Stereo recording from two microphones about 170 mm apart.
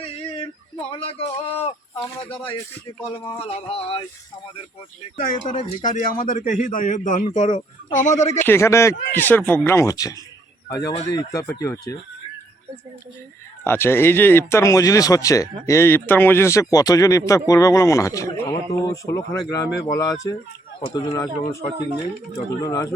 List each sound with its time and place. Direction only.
0.9 s a man's voice: 35° left (ahead or behind)
3.2 s a sound: 35° left (ahead or behind)
5.2 s a man's voice: 50° left (ahead or behind)
8.4 s speech: 15° left (ahead or behind)
13.7 s speech: 15° left (ahead or behind)
22.6 s speech: 20° left (ahead or behind)